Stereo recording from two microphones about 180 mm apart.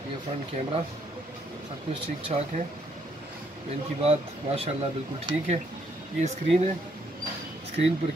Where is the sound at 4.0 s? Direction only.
35° right (ahead or behind).